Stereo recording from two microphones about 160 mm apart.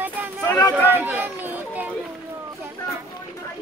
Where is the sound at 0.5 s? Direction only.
20° left (ahead or behind).